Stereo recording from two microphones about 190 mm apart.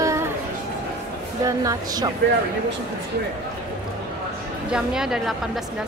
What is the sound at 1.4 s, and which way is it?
Speech, 15° right (ahead or behind).